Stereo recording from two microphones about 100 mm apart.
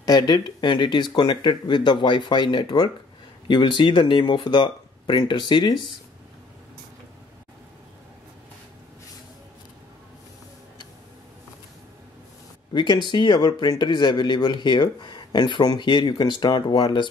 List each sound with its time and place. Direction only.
0.0 s speech: 45° left (ahead or behind)
12.7 s speech: 50° left (ahead or behind)